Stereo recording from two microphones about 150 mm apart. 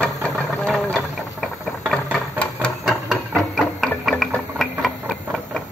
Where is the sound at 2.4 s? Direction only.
5° left (ahead or behind).